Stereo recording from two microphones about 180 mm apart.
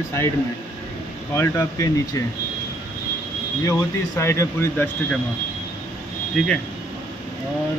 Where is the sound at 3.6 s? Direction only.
15° left (ahead or behind).